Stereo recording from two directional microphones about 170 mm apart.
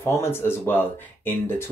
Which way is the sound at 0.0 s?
15° left (ahead or behind).